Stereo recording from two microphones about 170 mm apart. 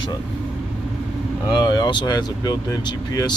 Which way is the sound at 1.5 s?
25° left (ahead or behind).